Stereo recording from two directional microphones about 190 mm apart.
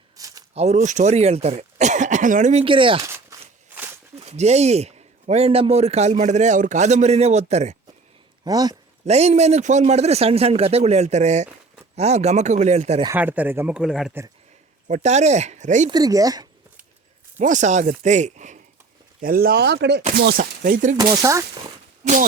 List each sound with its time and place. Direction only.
0.2 s a sound: 20° right (ahead or behind)
0.5 s speech: 35° right (ahead or behind)
3.0 s walk: 15° right (ahead or behind)
4.1 s speech: 35° right (ahead or behind)
8.4 s speech: 20° right (ahead or behind)
9.0 s speech: 35° right (ahead or behind)
13.1 s speech: 10° right (ahead or behind)
14.8 s speech: 40° right (ahead or behind)
15.9 s speech: 20° right (ahead or behind)
17.3 s speech: 40° right (ahead or behind)
19.2 s speech: 50° right (ahead or behind)
20.1 s speech: 50° right (ahead or behind)
20.9 s speech: 15° right (ahead or behind)